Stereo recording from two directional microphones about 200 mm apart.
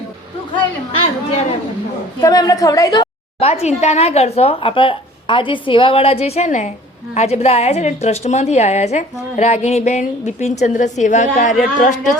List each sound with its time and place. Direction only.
2.2 s a woman's voice: 20° left (ahead or behind)
3.4 s speech: 30° left (ahead or behind)